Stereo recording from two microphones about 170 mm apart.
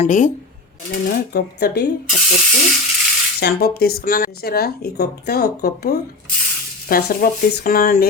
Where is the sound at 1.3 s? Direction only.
70° left (ahead or behind).